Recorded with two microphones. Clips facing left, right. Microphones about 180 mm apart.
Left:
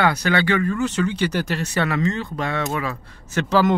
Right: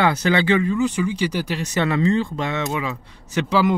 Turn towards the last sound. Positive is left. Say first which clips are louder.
# left 1 dB
turn(degrees=-15)  # may be behind; listen again after turning